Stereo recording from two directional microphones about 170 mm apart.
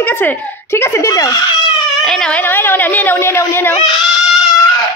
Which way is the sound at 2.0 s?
5° left (ahead or behind).